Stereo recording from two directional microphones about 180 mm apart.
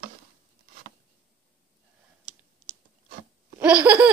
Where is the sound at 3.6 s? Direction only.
5° right (ahead or behind).